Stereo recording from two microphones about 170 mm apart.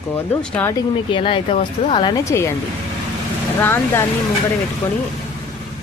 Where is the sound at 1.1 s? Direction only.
30° left (ahead or behind).